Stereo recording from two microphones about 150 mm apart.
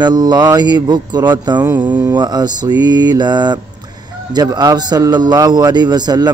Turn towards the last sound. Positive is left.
turn(degrees=-30)  # may be behind; listen again after turning